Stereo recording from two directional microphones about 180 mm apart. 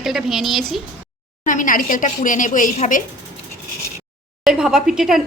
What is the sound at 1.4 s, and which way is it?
Speech, 45° left (ahead or behind).